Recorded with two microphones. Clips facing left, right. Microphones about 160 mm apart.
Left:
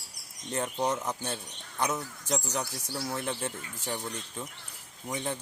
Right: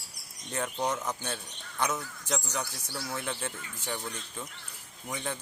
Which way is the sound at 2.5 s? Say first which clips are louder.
Left 2 dB; 10° left (ahead or behind).